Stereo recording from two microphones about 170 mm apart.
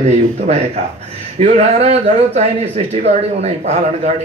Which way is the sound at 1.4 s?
40° right (ahead or behind).